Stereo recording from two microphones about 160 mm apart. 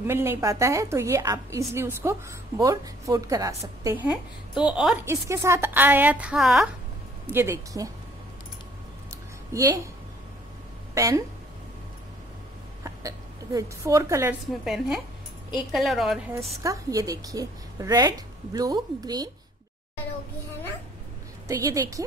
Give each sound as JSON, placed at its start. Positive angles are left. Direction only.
{"t": 0.0, "sound": "a woman's voice", "side_deg": -15}
{"t": 5.0, "sound": "a woman's voice", "side_deg": -20}
{"t": 7.2, "sound": "a woman's voice", "side_deg": -15}
{"t": 11.0, "sound": "a woman's voice", "side_deg": -20}
{"t": 12.8, "sound": "speech", "side_deg": -20}
{"t": 14.4, "sound": "a woman's voice", "side_deg": 0}
{"t": 16.6, "sound": "a woman's voice", "side_deg": -20}
{"t": 21.5, "sound": "a woman's voice", "side_deg": -20}